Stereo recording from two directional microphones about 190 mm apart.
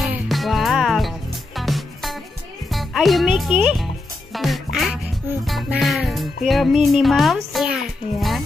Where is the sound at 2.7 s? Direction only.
Centre (ahead or behind).